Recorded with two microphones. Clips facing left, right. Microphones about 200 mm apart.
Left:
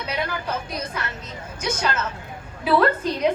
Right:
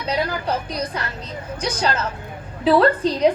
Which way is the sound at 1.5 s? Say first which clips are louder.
Right 2 dB; 35° right (ahead or behind).